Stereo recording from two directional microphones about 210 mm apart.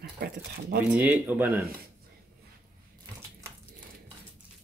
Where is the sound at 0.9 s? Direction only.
5° right (ahead or behind).